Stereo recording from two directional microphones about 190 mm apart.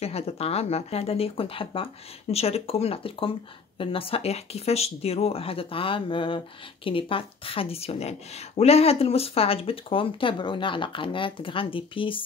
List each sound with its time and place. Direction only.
0.0 s speech: 30° left (ahead or behind)